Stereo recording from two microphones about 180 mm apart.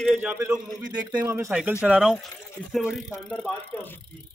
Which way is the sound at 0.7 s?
20° right (ahead or behind).